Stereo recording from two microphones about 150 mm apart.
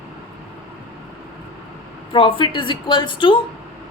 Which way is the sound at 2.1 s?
35° left (ahead or behind).